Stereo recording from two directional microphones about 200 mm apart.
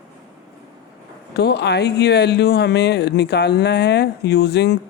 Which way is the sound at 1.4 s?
55° left (ahead or behind).